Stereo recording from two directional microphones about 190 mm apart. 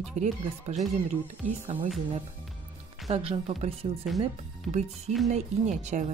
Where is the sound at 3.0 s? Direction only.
30° right (ahead or behind).